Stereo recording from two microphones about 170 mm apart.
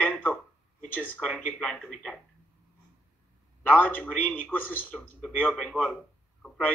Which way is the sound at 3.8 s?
10° left (ahead or behind).